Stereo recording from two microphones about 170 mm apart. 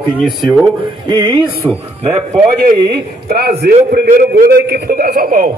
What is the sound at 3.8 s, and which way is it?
A man's voice, 65° right (ahead or behind).